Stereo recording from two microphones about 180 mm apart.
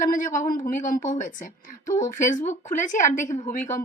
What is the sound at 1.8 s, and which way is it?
Speech, 15° left (ahead or behind).